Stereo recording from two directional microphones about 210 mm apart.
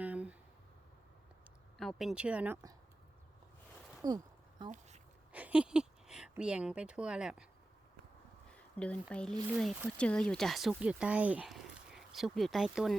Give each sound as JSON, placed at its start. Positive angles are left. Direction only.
{"t": 0.0, "sound": "a sound", "side_deg": -5}
{"t": 1.8, "sound": "speech", "side_deg": 0}
{"t": 4.0, "sound": "speech", "side_deg": -20}
{"t": 5.3, "sound": "speech", "side_deg": -5}
{"t": 8.4, "sound": "speech", "side_deg": 5}